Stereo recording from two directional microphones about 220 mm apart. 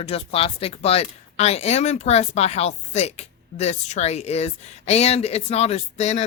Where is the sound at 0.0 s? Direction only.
25° left (ahead or behind).